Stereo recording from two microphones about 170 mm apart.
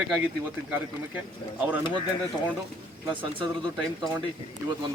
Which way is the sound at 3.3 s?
30° right (ahead or behind).